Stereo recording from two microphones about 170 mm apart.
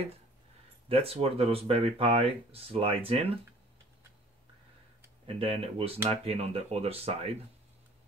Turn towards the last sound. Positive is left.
turn(degrees=-35)  # may be behind; listen again after turning